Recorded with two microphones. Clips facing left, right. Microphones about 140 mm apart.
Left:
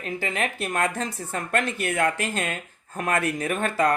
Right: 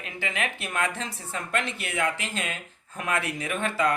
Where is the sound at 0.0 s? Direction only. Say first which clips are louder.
Left 4 dB; 40° left (ahead or behind).